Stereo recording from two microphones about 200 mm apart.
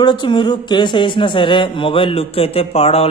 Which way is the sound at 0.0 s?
25° left (ahead or behind).